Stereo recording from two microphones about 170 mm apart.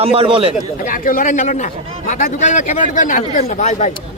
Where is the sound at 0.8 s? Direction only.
55° left (ahead or behind).